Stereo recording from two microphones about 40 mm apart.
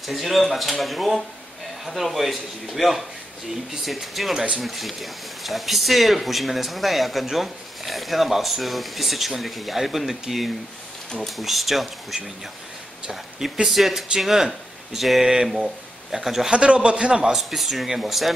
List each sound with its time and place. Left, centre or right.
0.0 s speech: centre
13.7 s speech: centre
16.4 s a man's voice: right
17.4 s speech: centre